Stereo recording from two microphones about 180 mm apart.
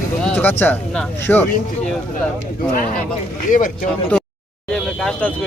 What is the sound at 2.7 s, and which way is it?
Speech, 50° left (ahead or behind).